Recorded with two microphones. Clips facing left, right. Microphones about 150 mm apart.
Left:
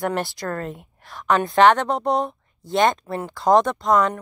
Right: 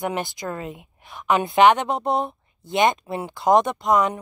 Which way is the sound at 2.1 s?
20° right (ahead or behind).